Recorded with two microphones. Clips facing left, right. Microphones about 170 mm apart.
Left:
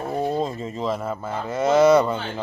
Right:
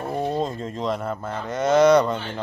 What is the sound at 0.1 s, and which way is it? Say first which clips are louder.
Speech: left 1 dB; centre (ahead or behind).